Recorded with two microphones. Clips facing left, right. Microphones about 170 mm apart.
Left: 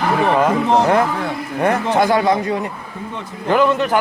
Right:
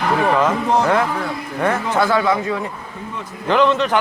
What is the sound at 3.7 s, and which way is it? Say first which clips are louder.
Speech: left 1 dB; 50° left (ahead or behind).